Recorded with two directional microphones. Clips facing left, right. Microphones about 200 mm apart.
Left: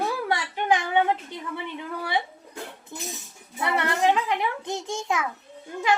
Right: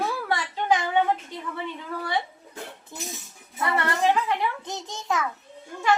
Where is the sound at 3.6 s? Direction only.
15° left (ahead or behind).